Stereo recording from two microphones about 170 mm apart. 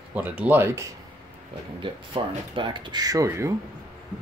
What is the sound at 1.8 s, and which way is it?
Speech, 30° right (ahead or behind).